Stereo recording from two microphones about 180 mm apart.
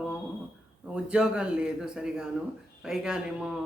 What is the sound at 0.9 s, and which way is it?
Speech, 5° right (ahead or behind).